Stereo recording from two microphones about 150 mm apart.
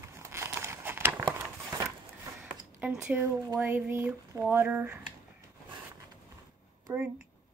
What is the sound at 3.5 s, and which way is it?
Speech, 10° right (ahead or behind).